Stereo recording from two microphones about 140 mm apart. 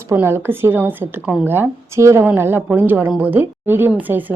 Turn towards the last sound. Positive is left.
turn(degrees=-10)  # may be behind; listen again after turning